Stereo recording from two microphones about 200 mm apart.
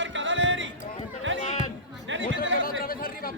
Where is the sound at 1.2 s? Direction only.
65° right (ahead or behind).